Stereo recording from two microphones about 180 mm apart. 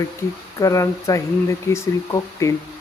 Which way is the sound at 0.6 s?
20° left (ahead or behind).